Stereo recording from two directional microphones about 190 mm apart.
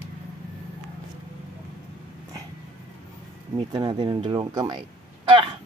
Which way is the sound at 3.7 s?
25° right (ahead or behind).